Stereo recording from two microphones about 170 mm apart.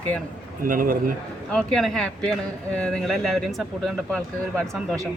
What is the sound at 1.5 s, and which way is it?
Speech, 5° left (ahead or behind).